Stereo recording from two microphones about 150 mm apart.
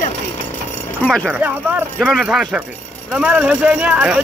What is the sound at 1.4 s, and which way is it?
Speech, 15° right (ahead or behind).